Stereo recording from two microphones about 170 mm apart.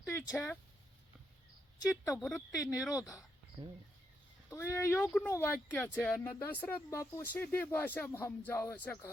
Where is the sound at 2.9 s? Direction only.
20° left (ahead or behind).